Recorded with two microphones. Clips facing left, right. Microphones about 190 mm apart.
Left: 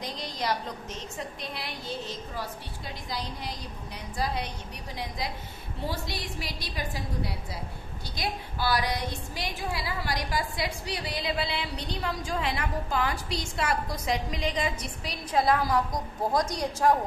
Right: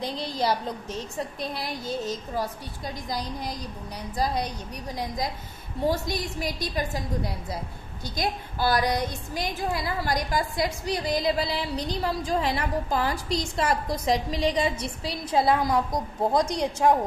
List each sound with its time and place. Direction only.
0.0 s a woman's voice: 30° right (ahead or behind)